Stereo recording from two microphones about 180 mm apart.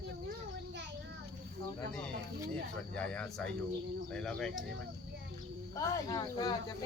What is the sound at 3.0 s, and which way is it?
Speech, 5° left (ahead or behind).